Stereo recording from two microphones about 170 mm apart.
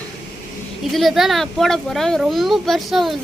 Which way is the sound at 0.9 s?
Centre (ahead or behind).